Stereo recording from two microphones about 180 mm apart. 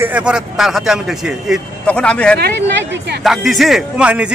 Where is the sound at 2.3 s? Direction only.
70° right (ahead or behind).